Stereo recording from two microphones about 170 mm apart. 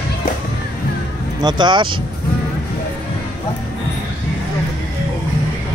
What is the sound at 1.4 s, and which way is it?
Speech, 25° right (ahead or behind).